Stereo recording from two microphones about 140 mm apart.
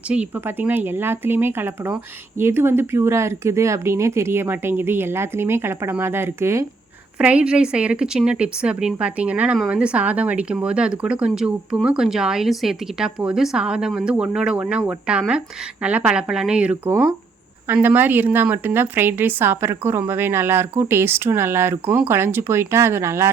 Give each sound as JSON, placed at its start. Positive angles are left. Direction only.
{"t": 0.1, "sound": "a woman's voice", "side_deg": -10}
{"t": 7.2, "sound": "a woman's voice", "side_deg": -10}